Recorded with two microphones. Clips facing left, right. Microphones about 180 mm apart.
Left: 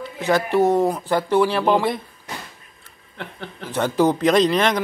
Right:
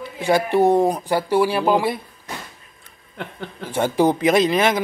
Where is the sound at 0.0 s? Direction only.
10° right (ahead or behind).